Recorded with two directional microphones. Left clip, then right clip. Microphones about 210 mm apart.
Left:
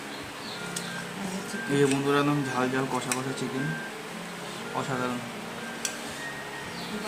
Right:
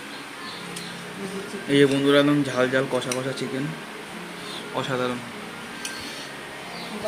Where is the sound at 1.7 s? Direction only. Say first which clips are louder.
Right 6 dB; 20° right (ahead or behind).